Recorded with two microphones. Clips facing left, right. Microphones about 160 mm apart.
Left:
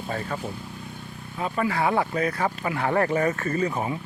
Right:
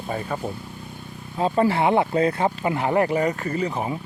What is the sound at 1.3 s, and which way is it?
Speech, 30° right (ahead or behind).